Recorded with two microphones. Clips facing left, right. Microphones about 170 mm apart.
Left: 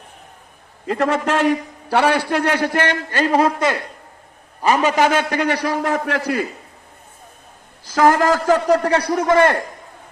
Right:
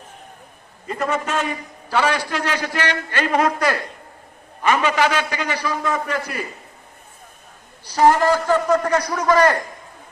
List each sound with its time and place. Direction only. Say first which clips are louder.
0.9 s a man's voice: left 5 dB; 70° left (ahead or behind); by 3.8 s 25° left (ahead or behind)
4.6 s a man's voice: left 2 dB; 40° left (ahead or behind); by 6.4 s 70° left (ahead or behind)
7.9 s a man's voice: left 1 dB; 90° left
9.0 s a man's voice: left 2 dB; 30° left (ahead or behind)